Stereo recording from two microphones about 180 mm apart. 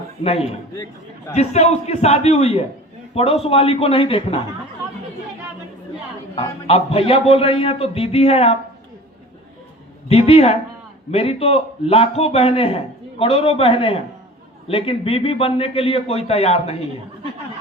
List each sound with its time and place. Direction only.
0.2 s a man's voice: 35° left (ahead or behind)
6.3 s a man's voice: 30° left (ahead or behind)
10.1 s a man's voice: 35° left (ahead or behind)